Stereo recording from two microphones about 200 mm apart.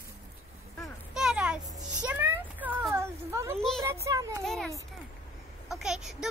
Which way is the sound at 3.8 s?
15° right (ahead or behind).